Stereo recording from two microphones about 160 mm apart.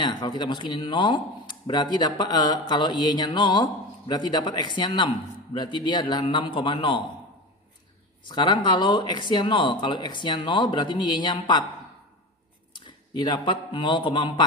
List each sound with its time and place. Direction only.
0.0 s speech: 30° left (ahead or behind)
8.3 s speech: 30° left (ahead or behind)
12.7 s a man's voice: 30° left (ahead or behind)